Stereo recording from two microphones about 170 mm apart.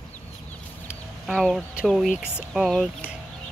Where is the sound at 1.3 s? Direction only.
Centre (ahead or behind).